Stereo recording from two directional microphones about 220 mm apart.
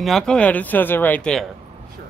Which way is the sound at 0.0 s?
Centre (ahead or behind).